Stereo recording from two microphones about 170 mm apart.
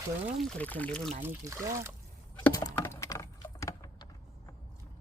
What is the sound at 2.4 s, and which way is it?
Typing, 20° left (ahead or behind).